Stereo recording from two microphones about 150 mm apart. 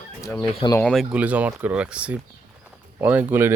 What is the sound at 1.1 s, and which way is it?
Speech, 10° right (ahead or behind).